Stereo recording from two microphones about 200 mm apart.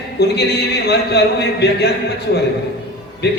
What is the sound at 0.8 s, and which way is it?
A man's voice, 55° left (ahead or behind).